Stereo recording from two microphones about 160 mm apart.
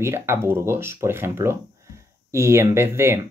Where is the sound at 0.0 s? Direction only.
15° right (ahead or behind).